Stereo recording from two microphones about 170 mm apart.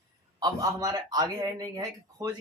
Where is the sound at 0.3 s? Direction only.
20° right (ahead or behind).